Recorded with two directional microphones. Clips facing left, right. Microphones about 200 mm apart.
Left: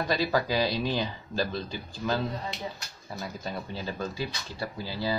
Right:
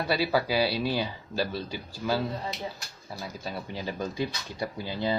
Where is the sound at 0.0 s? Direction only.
10° right (ahead or behind).